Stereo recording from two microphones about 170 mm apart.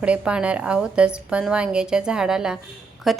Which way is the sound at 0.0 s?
5° right (ahead or behind).